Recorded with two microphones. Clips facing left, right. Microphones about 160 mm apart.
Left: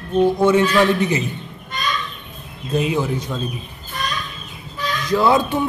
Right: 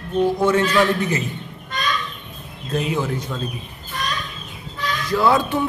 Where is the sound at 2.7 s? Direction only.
20° left (ahead or behind).